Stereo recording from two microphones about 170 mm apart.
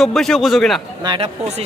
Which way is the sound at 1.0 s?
30° right (ahead or behind).